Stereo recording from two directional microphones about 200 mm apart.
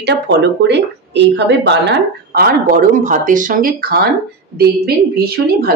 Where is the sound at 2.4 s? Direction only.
45° right (ahead or behind).